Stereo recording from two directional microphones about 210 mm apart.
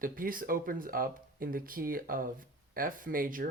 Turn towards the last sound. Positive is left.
turn(degrees=-40)  # may be behind; listen again after turning